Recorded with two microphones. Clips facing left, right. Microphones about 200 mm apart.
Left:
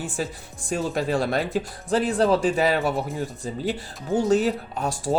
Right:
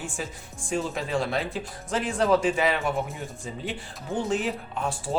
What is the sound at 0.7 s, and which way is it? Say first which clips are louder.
Speech: left 3 dB; 40° left (ahead or behind).